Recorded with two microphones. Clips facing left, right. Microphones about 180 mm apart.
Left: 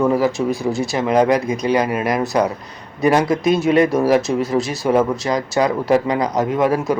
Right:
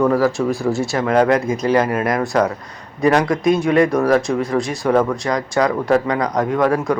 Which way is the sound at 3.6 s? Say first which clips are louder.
Even; 20° left (ahead or behind).